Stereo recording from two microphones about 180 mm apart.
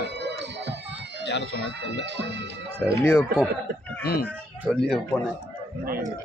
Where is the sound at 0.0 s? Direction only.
70° right (ahead or behind).